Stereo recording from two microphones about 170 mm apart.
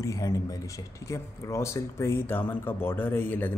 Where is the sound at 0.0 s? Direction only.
20° left (ahead or behind).